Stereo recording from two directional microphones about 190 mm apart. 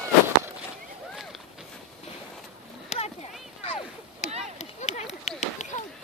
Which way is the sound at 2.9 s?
35° left (ahead or behind).